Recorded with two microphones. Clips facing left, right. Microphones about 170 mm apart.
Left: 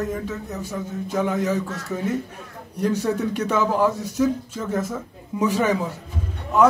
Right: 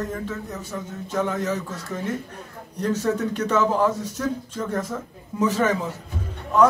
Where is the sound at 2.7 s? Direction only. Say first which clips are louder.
Left 1 dB; 10° left (ahead or behind).